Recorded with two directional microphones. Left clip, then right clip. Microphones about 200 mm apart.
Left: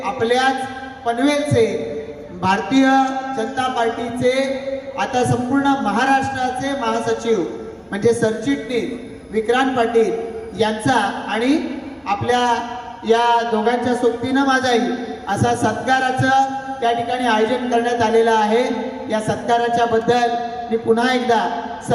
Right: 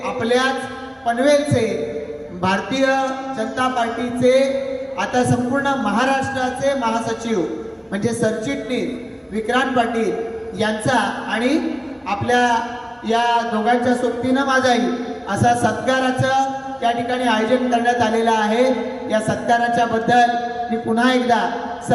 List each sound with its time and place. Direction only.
0.2 s a man's voice: 20° left (ahead or behind)
5.6 s a man's voice: 20° left (ahead or behind)